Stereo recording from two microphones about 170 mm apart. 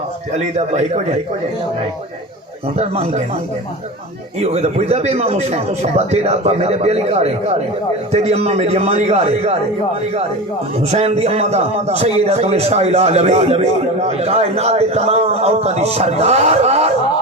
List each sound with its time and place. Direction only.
0.3 s a man's voice: 40° right (ahead or behind)
2.7 s a man's voice: 35° right (ahead or behind)
4.4 s a man's voice: 40° right (ahead or behind)
10.8 s a man's voice: 40° right (ahead or behind)